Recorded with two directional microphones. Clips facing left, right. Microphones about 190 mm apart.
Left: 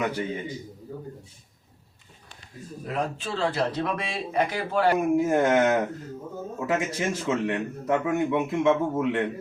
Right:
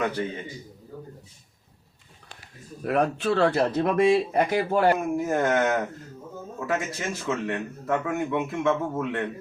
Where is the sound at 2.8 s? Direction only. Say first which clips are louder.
Right 7 dB; 65° right (ahead or behind).